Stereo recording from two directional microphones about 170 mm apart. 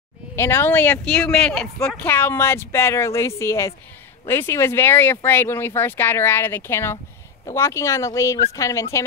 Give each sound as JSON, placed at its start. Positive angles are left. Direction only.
{"t": 0.4, "sound": "speech", "side_deg": 15}